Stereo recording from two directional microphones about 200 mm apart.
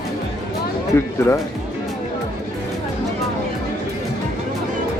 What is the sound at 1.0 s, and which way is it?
Speech, 10° left (ahead or behind).